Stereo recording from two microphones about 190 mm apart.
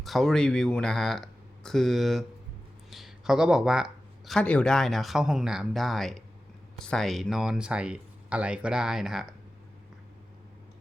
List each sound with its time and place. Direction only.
0.0 s speech: centre (ahead or behind)